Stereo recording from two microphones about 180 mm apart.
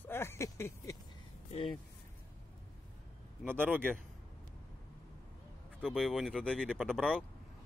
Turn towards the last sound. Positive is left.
turn(degrees=5)  # may be behind; listen again after turning